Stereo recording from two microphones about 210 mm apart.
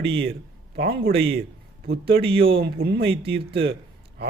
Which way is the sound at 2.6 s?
50° right (ahead or behind).